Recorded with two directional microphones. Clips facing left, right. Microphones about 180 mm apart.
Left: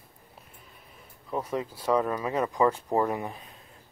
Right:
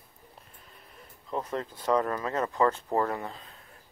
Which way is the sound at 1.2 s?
10° left (ahead or behind).